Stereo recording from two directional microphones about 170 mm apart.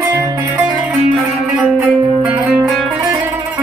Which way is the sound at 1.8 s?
10° right (ahead or behind).